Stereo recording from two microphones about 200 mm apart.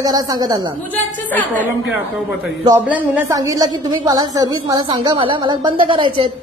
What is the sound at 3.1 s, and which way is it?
A woman's voice, 15° right (ahead or behind).